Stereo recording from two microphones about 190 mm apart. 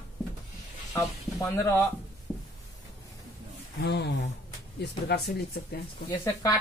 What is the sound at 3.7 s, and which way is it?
Speech, 60° left (ahead or behind).